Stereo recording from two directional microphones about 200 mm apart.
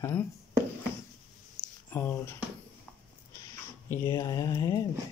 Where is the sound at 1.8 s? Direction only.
10° left (ahead or behind).